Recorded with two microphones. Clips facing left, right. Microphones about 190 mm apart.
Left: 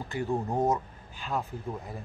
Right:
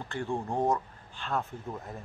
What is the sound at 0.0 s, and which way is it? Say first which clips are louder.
Speech: left 3 dB; 5° left (ahead or behind).